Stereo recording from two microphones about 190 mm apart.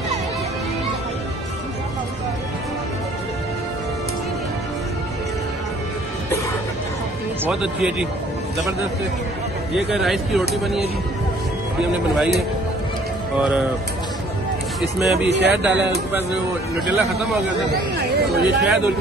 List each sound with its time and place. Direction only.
7.4 s speech: 5° right (ahead or behind)
9.8 s speech: centre (ahead or behind)
11.9 s speech: 5° right (ahead or behind)
15.0 s speech: centre (ahead or behind)
15.2 s speech: 65° right (ahead or behind)
15.5 s speech: 5° right (ahead or behind)
16.9 s speech: 5° right (ahead or behind)
17.9 s speech: 55° right (ahead or behind)